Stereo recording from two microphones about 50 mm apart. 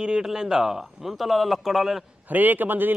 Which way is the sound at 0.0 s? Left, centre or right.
Centre.